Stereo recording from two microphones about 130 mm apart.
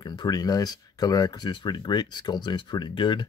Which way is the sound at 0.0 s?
30° left (ahead or behind).